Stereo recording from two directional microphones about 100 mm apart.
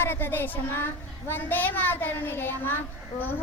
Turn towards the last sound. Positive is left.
turn(degrees=20)  # may be behind; listen again after turning